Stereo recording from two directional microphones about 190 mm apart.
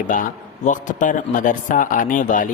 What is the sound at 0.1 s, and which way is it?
A man's voice, 45° left (ahead or behind).